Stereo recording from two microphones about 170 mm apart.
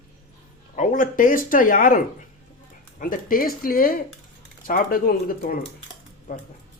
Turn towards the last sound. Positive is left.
turn(degrees=55)  # may be behind; listen again after turning